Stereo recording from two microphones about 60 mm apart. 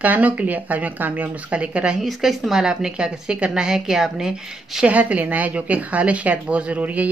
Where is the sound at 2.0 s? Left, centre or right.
Centre.